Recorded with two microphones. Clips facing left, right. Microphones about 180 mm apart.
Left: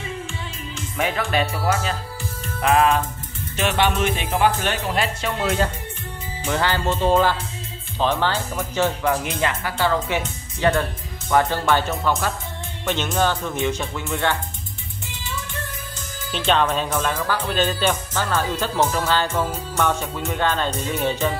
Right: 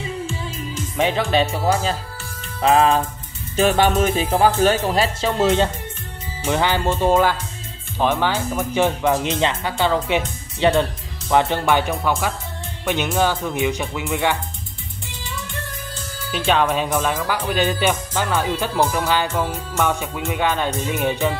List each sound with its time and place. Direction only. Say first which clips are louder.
0.9 s speech: right 4 dB; 25° right (ahead or behind)
3.5 s speech: right 5 dB; 40° right (ahead or behind)
5.4 s speech: right 5 dB; 25° right (ahead or behind)
16.3 s speech: right 1 dB; 10° right (ahead or behind)